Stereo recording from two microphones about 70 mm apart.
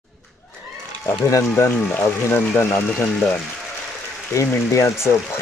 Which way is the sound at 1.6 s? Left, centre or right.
Left.